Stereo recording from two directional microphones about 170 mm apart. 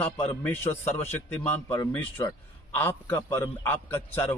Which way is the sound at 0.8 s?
40° left (ahead or behind).